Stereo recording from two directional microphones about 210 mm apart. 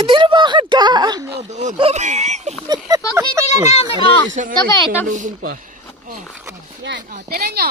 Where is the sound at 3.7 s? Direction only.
25° left (ahead or behind).